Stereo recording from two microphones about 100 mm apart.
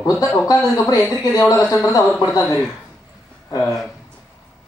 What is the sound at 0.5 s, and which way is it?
Speech, 35° left (ahead or behind).